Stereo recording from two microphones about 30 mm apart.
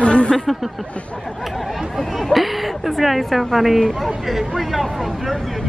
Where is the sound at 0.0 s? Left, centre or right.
Left.